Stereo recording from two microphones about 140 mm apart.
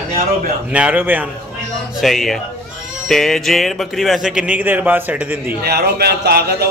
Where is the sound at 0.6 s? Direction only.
10° right (ahead or behind).